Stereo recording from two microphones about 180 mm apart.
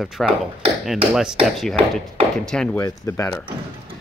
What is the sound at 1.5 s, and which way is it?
Speech, centre (ahead or behind).